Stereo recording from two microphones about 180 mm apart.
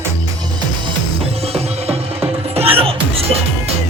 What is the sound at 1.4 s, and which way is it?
Music, 35° right (ahead or behind).